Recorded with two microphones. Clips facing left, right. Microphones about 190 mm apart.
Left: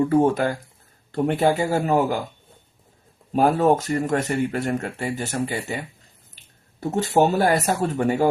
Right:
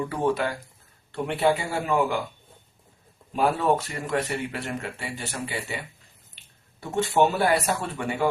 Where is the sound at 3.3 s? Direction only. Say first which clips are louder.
Left 5 dB; 45° left (ahead or behind).